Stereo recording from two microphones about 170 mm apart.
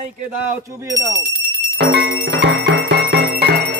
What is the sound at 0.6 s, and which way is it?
Speech, 20° right (ahead or behind).